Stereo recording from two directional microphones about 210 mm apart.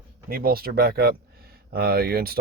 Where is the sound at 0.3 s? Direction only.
45° right (ahead or behind).